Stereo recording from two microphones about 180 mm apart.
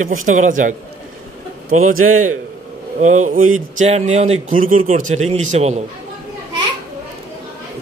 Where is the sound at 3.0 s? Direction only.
40° right (ahead or behind).